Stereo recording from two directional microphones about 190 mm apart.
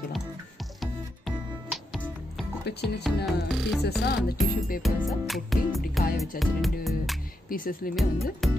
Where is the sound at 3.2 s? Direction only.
Centre (ahead or behind).